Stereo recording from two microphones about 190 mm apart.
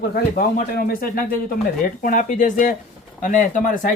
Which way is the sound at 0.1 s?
55° left (ahead or behind).